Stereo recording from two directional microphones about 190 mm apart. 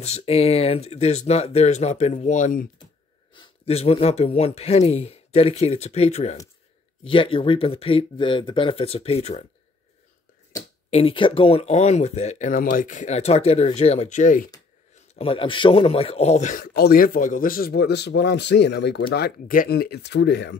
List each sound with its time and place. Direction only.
0.0 s speech: 35° left (ahead or behind)
10.9 s speech: 30° left (ahead or behind)
15.1 s speech: 30° left (ahead or behind); by 20.5 s 65° left (ahead or behind)